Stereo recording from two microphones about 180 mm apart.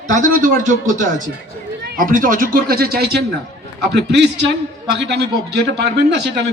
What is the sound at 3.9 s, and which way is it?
A man's voice, 70° right (ahead or behind).